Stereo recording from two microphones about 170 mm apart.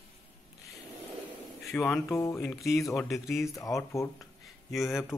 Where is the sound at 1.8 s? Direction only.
10° left (ahead or behind).